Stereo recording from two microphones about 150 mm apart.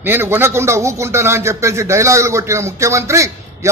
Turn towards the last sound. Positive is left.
turn(degrees=-20)  # may be behind; listen again after turning